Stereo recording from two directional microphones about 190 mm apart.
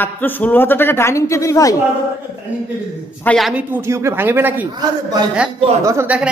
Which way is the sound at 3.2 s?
Centre (ahead or behind).